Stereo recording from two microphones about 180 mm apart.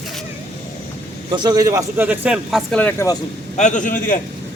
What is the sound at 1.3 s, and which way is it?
A man's voice, 25° right (ahead or behind).